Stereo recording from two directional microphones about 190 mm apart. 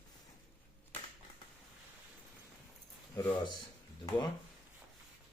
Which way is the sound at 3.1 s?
15° left (ahead or behind).